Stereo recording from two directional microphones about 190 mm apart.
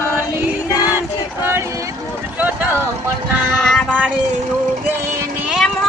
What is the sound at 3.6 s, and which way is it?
Music, 5° left (ahead or behind).